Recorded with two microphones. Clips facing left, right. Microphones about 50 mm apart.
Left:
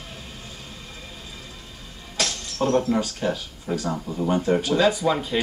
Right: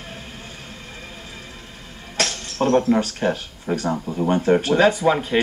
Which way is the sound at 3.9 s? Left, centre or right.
Centre.